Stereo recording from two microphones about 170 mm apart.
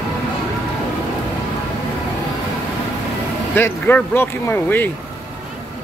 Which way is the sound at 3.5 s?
10° left (ahead or behind).